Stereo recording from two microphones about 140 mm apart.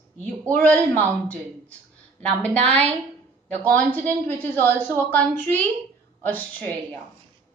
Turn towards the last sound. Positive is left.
turn(degrees=10)  # may be behind; listen again after turning